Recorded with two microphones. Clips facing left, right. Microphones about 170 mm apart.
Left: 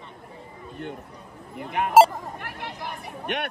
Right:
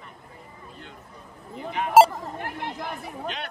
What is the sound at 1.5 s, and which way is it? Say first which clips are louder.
Speech: left 2 dB; 60° left (ahead or behind).